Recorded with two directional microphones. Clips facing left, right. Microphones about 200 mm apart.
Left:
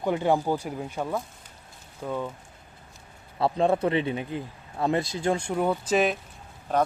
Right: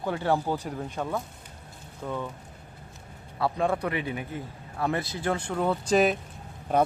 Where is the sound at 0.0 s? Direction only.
15° left (ahead or behind).